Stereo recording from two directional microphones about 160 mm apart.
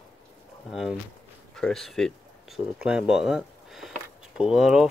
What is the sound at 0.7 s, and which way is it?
Speech, centre (ahead or behind).